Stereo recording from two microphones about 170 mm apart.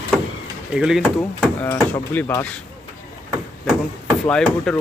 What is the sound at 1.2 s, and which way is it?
Speech, 10° left (ahead or behind).